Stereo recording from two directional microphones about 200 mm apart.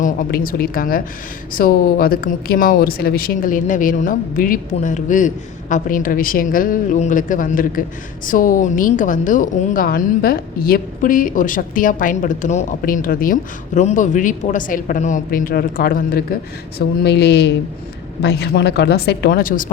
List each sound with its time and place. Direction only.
0.0 s a woman's voice: 45° left (ahead or behind)